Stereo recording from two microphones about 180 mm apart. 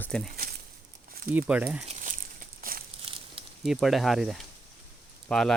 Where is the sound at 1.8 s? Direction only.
40° right (ahead or behind).